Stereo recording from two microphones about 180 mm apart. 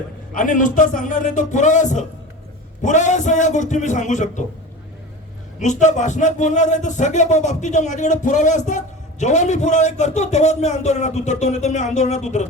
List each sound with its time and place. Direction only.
0.3 s a man's voice: 45° left (ahead or behind)
5.5 s a man's voice: 45° left (ahead or behind)